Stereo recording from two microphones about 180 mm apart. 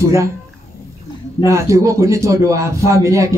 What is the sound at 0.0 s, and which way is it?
Speech, 15° right (ahead or behind).